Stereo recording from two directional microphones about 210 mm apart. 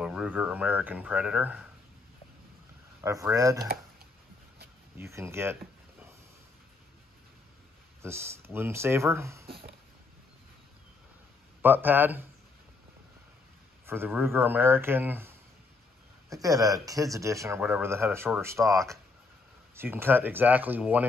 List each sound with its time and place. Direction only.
0.0 s speech: 5° right (ahead or behind)
3.0 s speech: 15° right (ahead or behind)
4.9 s speech: 10° right (ahead or behind)
8.0 s speech: 10° right (ahead or behind)
11.6 s speech: 10° right (ahead or behind)
13.8 s speech: 10° right (ahead or behind)
19.7 s speech: 10° right (ahead or behind)